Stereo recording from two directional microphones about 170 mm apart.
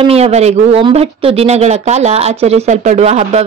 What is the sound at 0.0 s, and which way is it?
Speech, 35° right (ahead or behind).